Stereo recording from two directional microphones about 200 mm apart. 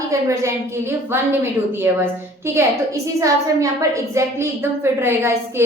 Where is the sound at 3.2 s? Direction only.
15° right (ahead or behind).